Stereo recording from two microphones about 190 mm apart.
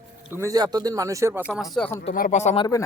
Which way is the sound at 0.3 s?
20° right (ahead or behind).